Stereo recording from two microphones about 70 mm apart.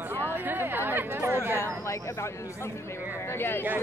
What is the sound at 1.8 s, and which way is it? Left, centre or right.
Speech, left.